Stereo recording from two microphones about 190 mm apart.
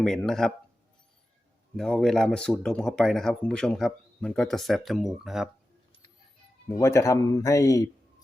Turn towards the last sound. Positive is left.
turn(degrees=15)  # may be behind; listen again after turning